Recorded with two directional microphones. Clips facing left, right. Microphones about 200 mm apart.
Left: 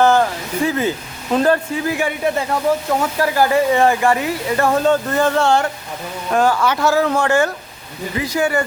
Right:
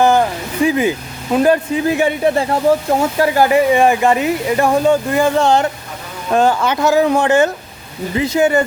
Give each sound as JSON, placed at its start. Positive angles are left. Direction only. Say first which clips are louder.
{"t": 0.0, "sound": "speech", "louder": "right 1 dB", "side_deg": -15}
{"t": 1.9, "sound": "speech", "louder": "right 5 dB", "side_deg": -25}